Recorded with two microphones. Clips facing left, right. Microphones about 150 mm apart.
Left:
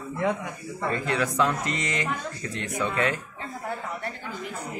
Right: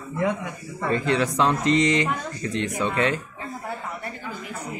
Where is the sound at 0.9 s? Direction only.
25° right (ahead or behind).